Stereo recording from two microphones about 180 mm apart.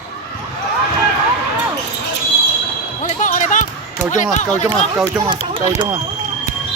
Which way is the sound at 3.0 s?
45° left (ahead or behind).